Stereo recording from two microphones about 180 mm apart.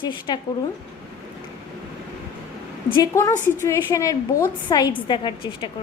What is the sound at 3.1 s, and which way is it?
A woman's voice, 15° left (ahead or behind).